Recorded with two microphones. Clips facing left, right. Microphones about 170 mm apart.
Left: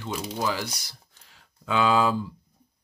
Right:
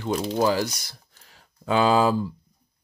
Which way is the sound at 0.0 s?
45° right (ahead or behind).